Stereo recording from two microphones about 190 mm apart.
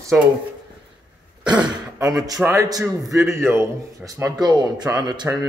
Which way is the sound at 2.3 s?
15° right (ahead or behind).